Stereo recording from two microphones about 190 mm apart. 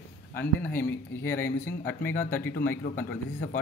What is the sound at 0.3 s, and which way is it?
Speech, 10° left (ahead or behind).